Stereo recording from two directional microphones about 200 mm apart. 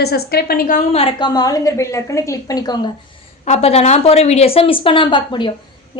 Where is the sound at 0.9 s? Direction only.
25° left (ahead or behind).